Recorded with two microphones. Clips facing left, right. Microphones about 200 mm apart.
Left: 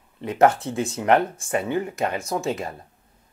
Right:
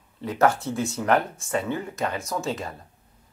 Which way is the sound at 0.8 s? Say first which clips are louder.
Left 3 dB; 30° left (ahead or behind).